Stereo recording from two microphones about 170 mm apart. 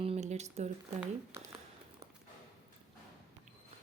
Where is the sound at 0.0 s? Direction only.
40° right (ahead or behind).